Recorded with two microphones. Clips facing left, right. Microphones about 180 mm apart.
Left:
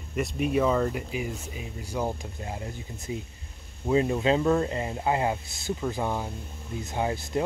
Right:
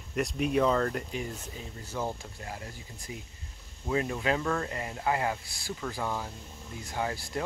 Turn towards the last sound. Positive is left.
turn(degrees=20)  # may be behind; listen again after turning